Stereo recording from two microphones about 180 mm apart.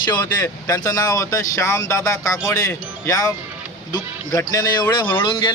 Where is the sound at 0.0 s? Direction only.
20° left (ahead or behind).